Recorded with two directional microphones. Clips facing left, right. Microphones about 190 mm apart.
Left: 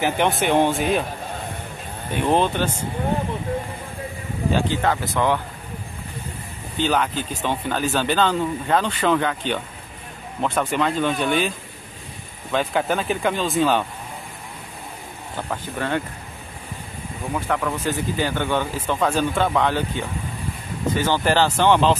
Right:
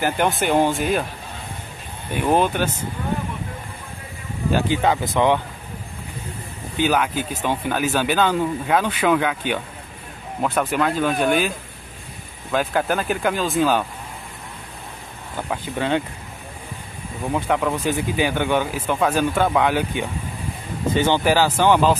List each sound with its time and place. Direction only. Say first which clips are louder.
0.0 s speech: even; centre (ahead or behind)
2.2 s speech: right 1 dB; 10° right (ahead or behind)
4.5 s speech: right 2 dB; 10° right (ahead or behind)
6.8 s speech: right 1 dB; 10° right (ahead or behind)
15.5 s speech: right 3 dB; 15° right (ahead or behind)
17.3 s speech: right 3 dB; 15° right (ahead or behind)
21.2 s speech: right 1 dB; 10° right (ahead or behind)